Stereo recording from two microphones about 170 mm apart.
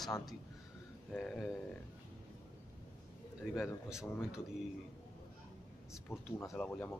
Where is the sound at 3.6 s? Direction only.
5° right (ahead or behind).